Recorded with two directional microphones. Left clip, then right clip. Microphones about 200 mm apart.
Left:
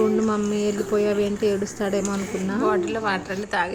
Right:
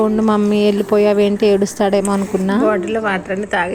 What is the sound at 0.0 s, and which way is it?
A woman's voice, 40° right (ahead or behind).